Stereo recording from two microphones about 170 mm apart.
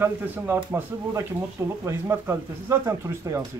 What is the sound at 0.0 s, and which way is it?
Speech, 10° right (ahead or behind).